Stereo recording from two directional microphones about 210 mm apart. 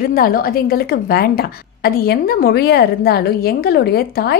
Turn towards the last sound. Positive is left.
turn(degrees=50)  # may be behind; listen again after turning